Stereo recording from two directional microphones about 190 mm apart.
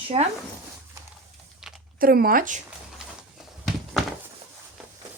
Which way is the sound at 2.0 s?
50° right (ahead or behind).